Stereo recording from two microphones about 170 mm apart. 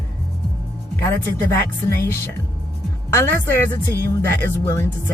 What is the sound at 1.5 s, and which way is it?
Speech, 15° left (ahead or behind).